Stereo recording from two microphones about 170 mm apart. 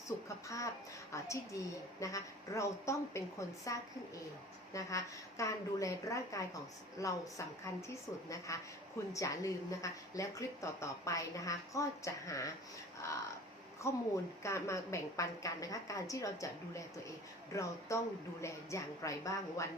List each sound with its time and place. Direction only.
0.4 s a woman's voice: 20° left (ahead or behind)
13.8 s a woman's voice: 15° left (ahead or behind)